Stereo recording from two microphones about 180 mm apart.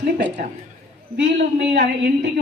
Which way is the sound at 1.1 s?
70° right (ahead or behind).